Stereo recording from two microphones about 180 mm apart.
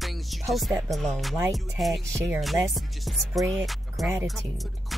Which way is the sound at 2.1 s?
15° right (ahead or behind).